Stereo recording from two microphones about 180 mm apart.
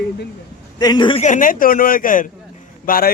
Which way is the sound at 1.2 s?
45° left (ahead or behind).